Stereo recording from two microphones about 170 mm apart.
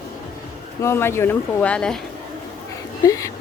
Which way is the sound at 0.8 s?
15° left (ahead or behind).